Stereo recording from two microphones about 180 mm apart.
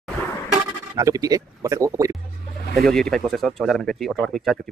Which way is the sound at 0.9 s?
20° right (ahead or behind).